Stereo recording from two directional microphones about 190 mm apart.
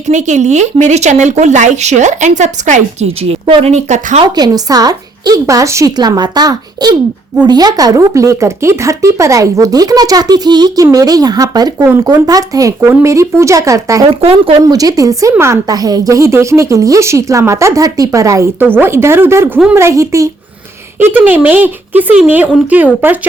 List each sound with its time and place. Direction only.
0.1 s speech: 40° right (ahead or behind)
4.2 s a woman's voice: 20° right (ahead or behind)
14.1 s a woman's voice: 30° right (ahead or behind); by 22.9 s 10° right (ahead or behind)